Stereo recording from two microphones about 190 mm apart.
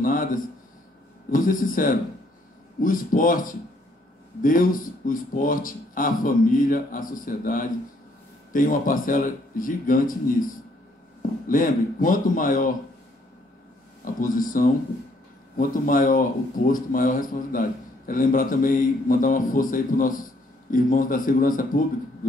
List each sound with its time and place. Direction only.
0.0 s speech: 45° left (ahead or behind)
14.2 s speech: 45° left (ahead or behind)